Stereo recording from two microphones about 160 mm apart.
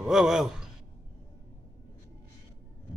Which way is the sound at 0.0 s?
5° right (ahead or behind).